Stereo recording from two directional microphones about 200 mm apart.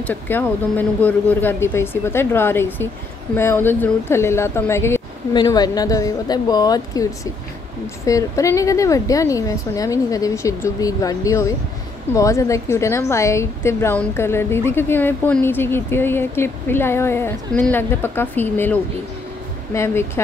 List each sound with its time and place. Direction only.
0.0 s a woman's voice: 10° left (ahead or behind)